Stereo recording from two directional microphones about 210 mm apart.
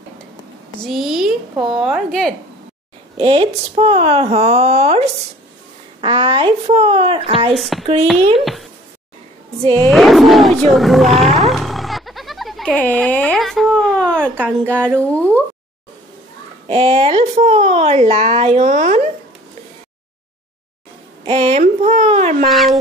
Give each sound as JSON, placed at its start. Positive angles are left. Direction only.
{"t": 0.8, "sound": "speech", "side_deg": 0}
{"t": 3.2, "sound": "speech", "side_deg": -25}
{"t": 7.5, "sound": "speech", "side_deg": 0}
{"t": 7.8, "sound": "speech", "side_deg": -25}
{"t": 9.8, "sound": "speech", "side_deg": 0}
{"t": 14.3, "sound": "a woman's voice", "side_deg": -10}
{"t": 15.0, "sound": "speech", "side_deg": 5}
{"t": 16.6, "sound": "speech", "side_deg": -25}
{"t": 21.3, "sound": "speech", "side_deg": -30}
{"t": 22.5, "sound": "speech", "side_deg": 0}